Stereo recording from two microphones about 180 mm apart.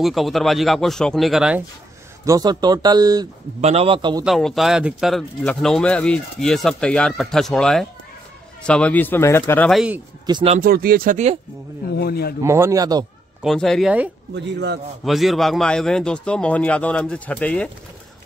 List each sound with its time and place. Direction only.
0.0 s speech: centre (ahead or behind)
2.2 s speech: 20° right (ahead or behind)
3.6 s a man's voice: 35° right (ahead or behind)
4.2 s speech: centre (ahead or behind)
9.7 s speech: 5° right (ahead or behind)
10.2 s speech: 25° right (ahead or behind)
10.6 s speech: 55° right (ahead or behind)
12.0 s speech: 60° left (ahead or behind)
12.4 s a man's voice: 15° right (ahead or behind)
13.4 s speech: centre (ahead or behind)
14.3 s a man's voice: 75° right (ahead or behind)
15.0 s speech: centre (ahead or behind)